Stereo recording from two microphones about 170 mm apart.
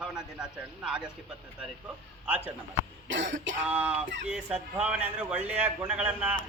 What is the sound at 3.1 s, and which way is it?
Cough, 90° right.